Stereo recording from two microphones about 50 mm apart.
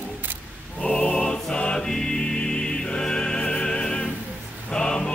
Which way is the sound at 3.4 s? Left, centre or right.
Centre.